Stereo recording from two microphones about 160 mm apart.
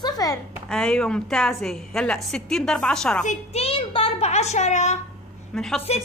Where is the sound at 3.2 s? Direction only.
40° left (ahead or behind).